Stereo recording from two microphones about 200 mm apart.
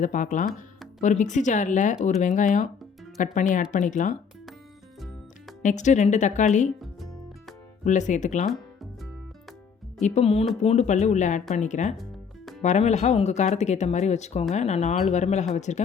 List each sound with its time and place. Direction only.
0.0 s speech: 40° left (ahead or behind)
5.6 s speech: 35° left (ahead or behind)
7.9 s speech: 40° left (ahead or behind)
8.4 s music: centre (ahead or behind)
10.0 s speech: 30° left (ahead or behind)